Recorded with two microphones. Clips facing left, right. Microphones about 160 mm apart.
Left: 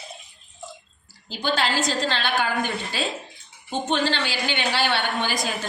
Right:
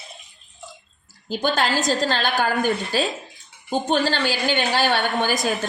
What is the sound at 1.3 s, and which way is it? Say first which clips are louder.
A woman's voice: right 3 dB; 50° right (ahead or behind).